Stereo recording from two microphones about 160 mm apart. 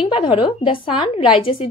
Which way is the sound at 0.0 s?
30° left (ahead or behind).